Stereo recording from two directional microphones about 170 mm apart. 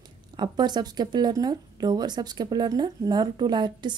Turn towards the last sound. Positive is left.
turn(degrees=-25)  # may be behind; listen again after turning